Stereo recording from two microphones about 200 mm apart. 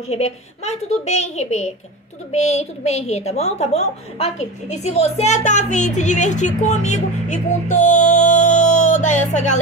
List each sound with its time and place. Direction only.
0.1 s a woman's voice: 35° left (ahead or behind)